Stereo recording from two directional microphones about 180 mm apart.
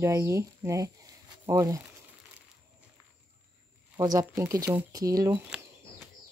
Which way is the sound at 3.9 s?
15° right (ahead or behind).